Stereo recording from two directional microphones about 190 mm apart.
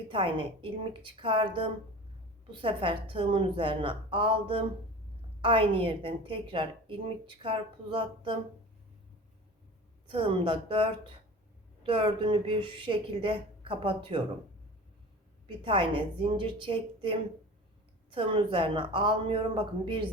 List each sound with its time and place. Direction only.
0.1 s a woman's voice: 25° right (ahead or behind)
10.1 s a woman's voice: 30° right (ahead or behind)
15.4 s a woman's voice: 25° right (ahead or behind)